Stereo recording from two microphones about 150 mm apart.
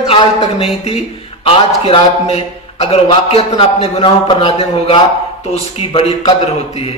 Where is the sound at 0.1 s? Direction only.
40° left (ahead or behind).